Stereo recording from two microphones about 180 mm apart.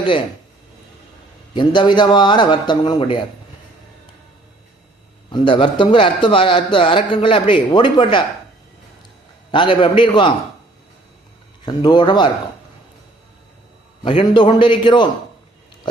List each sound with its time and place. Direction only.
1.5 s a man's voice: 25° left (ahead or behind)
5.3 s a man's voice: 25° left (ahead or behind)
9.5 s a man's voice: 25° left (ahead or behind)
11.6 s a man's voice: 25° left (ahead or behind)
14.0 s a man's voice: 30° left (ahead or behind)